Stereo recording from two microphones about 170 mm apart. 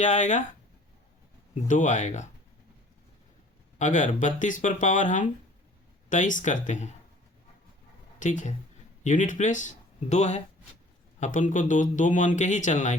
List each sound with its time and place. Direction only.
0.0 s speech: 45° left (ahead or behind)
1.6 s speech: 45° left (ahead or behind)
3.8 s speech: 45° left (ahead or behind)
8.2 s speech: 45° left (ahead or behind)